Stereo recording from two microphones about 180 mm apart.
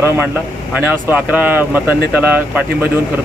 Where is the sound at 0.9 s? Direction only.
10° right (ahead or behind).